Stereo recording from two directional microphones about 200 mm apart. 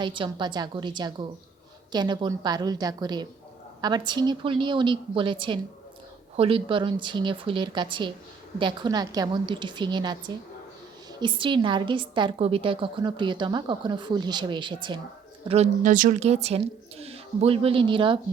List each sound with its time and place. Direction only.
0.0 s a woman's voice: 25° right (ahead or behind)